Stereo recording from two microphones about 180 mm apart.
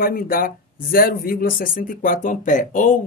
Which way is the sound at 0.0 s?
55° left (ahead or behind).